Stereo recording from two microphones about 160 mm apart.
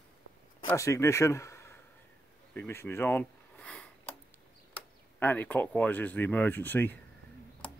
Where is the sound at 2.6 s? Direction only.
15° left (ahead or behind).